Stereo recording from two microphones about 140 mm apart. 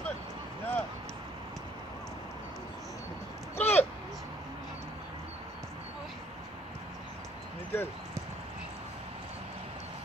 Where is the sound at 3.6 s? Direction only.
15° left (ahead or behind).